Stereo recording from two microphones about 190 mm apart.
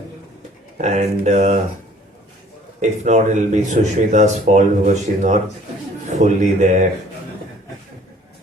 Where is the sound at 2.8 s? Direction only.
40° right (ahead or behind).